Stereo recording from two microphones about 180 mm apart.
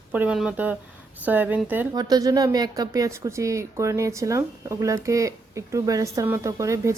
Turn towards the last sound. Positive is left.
turn(degrees=-15)  # may be behind; listen again after turning